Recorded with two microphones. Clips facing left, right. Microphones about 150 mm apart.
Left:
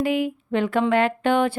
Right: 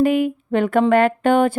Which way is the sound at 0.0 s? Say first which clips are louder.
Right 6 dB; 50° right (ahead or behind).